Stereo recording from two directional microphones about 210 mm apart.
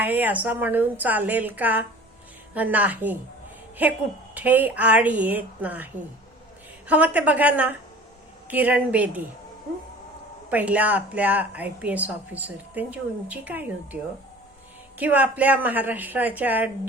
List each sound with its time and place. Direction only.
0.0 s a woman's voice: 10° right (ahead or behind)
10.5 s a woman's voice: 5° right (ahead or behind)